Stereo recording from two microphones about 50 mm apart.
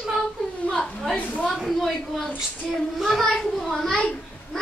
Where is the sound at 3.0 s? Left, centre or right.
Centre.